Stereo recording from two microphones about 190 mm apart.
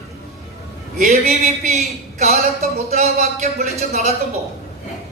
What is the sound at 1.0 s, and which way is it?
Speech, 40° right (ahead or behind).